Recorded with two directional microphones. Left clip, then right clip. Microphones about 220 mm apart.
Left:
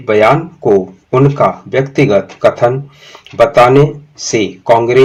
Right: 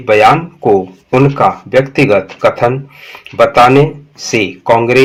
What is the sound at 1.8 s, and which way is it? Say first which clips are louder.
Speech: even; 25° right (ahead or behind).